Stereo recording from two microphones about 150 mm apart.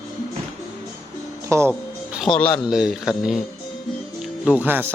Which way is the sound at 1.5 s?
20° right (ahead or behind).